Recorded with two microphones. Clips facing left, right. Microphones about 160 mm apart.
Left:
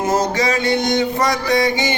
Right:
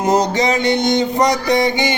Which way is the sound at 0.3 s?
20° right (ahead or behind).